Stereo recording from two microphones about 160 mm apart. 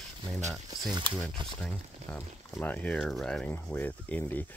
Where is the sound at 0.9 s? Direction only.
25° right (ahead or behind).